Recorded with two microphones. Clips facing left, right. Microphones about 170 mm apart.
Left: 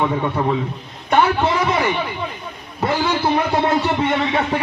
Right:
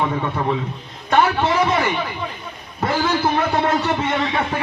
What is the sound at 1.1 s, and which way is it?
Speech, 15° left (ahead or behind).